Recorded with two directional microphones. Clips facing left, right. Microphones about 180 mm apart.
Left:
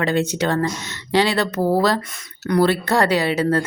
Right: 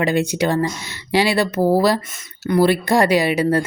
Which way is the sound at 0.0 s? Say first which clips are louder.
Right 2 dB; 10° right (ahead or behind).